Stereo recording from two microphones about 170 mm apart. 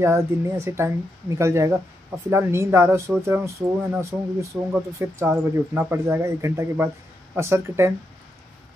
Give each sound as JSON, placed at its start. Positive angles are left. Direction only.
{"t": 0.0, "sound": "speech", "side_deg": -15}